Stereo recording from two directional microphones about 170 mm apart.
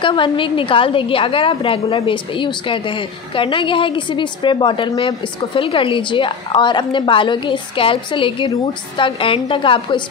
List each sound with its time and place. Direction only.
0.0 s a woman's voice: 30° left (ahead or behind)